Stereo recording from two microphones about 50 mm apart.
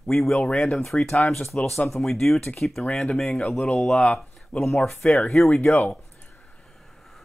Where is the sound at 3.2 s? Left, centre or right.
Centre.